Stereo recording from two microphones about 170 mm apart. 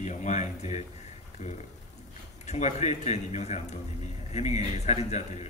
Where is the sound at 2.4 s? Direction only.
40° left (ahead or behind).